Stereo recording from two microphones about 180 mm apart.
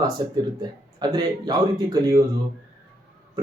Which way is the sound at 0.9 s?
20° right (ahead or behind).